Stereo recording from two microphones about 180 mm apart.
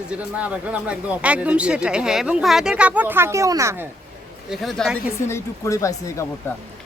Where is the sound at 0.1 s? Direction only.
5° right (ahead or behind).